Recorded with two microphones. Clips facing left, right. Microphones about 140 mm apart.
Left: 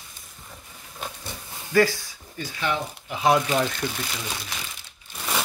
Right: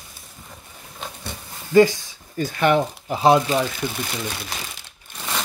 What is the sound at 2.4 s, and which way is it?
Speech, 50° right (ahead or behind).